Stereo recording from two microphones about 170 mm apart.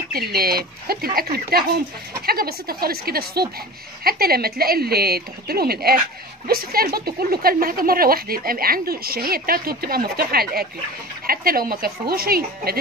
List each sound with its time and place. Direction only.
0.1 s speech: 60° right (ahead or behind)